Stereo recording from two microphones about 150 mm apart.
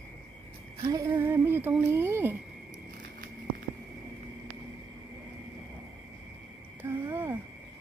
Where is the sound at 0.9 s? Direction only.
20° right (ahead or behind).